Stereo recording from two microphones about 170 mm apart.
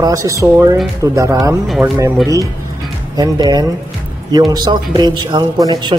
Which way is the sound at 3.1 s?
20° right (ahead or behind).